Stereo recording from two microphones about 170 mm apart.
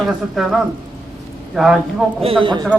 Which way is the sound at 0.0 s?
Centre (ahead or behind).